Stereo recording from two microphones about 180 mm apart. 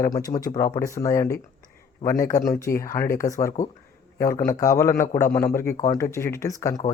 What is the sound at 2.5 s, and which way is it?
Speech, 15° left (ahead or behind).